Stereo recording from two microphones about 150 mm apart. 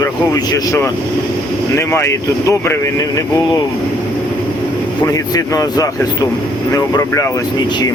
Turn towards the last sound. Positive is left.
turn(degrees=20)  # may be behind; listen again after turning